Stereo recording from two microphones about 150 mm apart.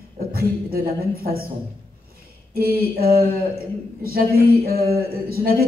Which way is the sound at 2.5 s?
90° right.